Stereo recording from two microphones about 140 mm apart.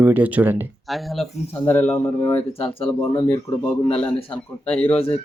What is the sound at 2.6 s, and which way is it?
Speech, 40° left (ahead or behind).